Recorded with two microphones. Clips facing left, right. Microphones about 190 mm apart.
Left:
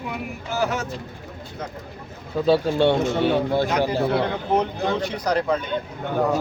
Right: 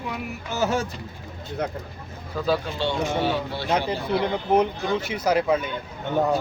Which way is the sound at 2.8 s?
55° left (ahead or behind).